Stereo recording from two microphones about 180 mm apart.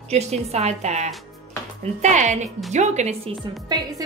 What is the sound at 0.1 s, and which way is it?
A woman's voice, 35° right (ahead or behind).